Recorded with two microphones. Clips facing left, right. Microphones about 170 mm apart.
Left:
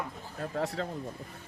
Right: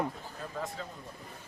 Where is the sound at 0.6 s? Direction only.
75° left (ahead or behind).